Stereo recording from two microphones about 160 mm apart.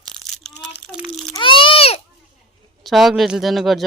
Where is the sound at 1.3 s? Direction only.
35° left (ahead or behind).